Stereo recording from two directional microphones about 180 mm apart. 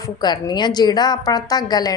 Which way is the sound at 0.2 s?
25° left (ahead or behind).